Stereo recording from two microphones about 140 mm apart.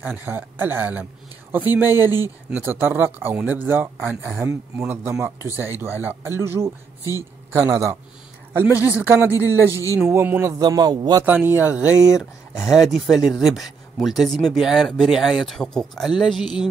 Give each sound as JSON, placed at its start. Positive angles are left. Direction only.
{"t": 0.0, "sound": "a man's voice", "side_deg": -10}
{"t": 8.8, "sound": "speech", "side_deg": -15}
{"t": 10.6, "sound": "a man's voice", "side_deg": -30}
{"t": 11.2, "sound": "speech", "side_deg": -15}